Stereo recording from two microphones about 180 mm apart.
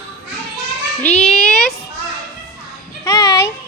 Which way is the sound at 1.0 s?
5° left (ahead or behind).